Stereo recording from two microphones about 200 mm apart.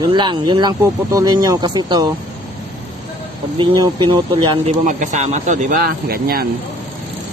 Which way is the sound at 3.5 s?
25° right (ahead or behind).